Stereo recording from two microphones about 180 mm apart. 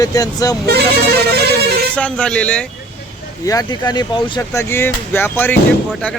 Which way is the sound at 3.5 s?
20° left (ahead or behind).